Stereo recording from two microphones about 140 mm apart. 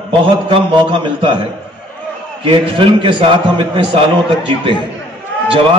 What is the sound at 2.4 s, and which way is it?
A man's voice, 40° right (ahead or behind).